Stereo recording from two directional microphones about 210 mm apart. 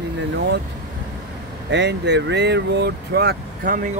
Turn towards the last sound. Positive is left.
turn(degrees=-40)  # may be behind; listen again after turning